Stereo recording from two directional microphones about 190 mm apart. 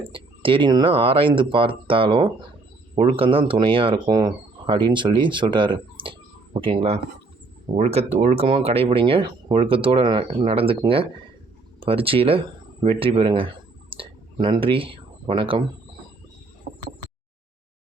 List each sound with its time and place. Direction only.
0.0 s speech: 25° right (ahead or behind)